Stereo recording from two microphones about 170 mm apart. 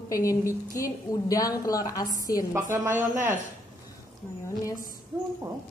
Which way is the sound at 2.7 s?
10° right (ahead or behind).